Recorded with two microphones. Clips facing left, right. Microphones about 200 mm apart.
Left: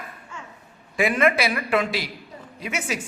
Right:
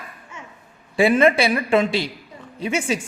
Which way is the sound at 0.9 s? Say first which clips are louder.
Right 5 dB; 30° right (ahead or behind).